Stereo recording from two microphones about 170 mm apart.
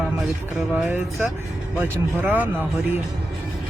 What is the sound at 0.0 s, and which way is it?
Speech, centre (ahead or behind).